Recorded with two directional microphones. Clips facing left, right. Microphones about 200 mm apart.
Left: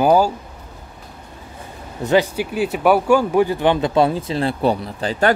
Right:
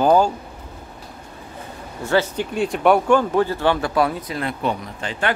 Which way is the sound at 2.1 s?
15° left (ahead or behind).